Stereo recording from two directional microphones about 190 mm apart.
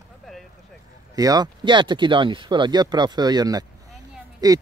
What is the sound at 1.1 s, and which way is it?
Speech, 20° right (ahead or behind).